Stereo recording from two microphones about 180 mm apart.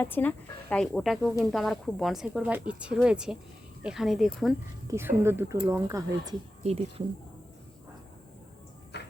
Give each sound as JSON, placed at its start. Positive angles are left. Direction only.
{"t": 0.0, "sound": "speech", "side_deg": 10}
{"t": 4.9, "sound": "speech", "side_deg": -15}
{"t": 6.6, "sound": "speech", "side_deg": -35}
{"t": 8.9, "sound": "music", "side_deg": 70}